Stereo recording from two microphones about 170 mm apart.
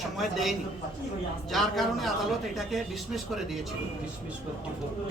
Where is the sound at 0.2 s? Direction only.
Centre (ahead or behind).